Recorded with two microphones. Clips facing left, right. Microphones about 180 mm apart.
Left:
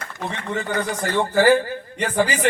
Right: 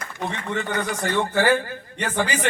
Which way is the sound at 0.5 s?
35° left (ahead or behind).